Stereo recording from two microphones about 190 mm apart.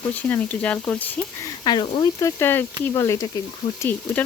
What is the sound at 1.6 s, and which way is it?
Speech, 25° left (ahead or behind).